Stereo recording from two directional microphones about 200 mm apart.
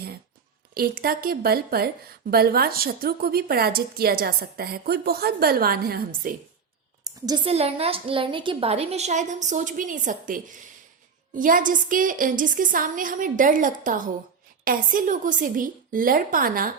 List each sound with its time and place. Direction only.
0.7 s speech: 50° right (ahead or behind)
7.0 s a woman's voice: 20° right (ahead or behind); by 16.7 s 45° right (ahead or behind)